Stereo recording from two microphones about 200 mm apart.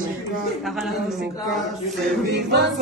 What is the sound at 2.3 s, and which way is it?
A capella, 55° right (ahead or behind).